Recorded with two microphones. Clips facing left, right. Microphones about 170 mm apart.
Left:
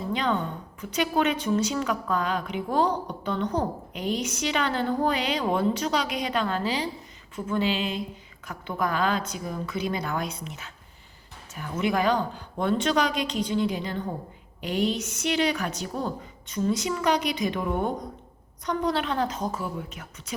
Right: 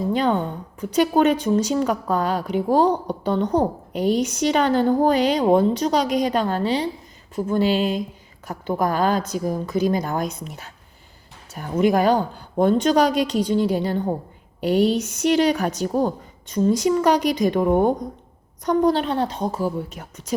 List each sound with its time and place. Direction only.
0.1 s a woman's voice: 45° right (ahead or behind)